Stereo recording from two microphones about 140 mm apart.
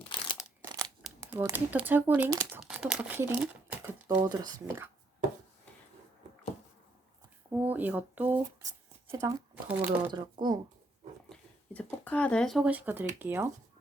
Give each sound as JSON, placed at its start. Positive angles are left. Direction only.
{"t": 1.4, "sound": "speech", "side_deg": -20}
{"t": 4.2, "sound": "speech", "side_deg": -30}
{"t": 4.6, "sound": "speech", "side_deg": -20}
{"t": 7.5, "sound": "speech", "side_deg": -10}
{"t": 9.6, "sound": "speech", "side_deg": -15}
{"t": 10.1, "sound": "speech", "side_deg": -30}
{"t": 11.3, "sound": "a sound", "side_deg": 10}
{"t": 13.1, "sound": "speech", "side_deg": -15}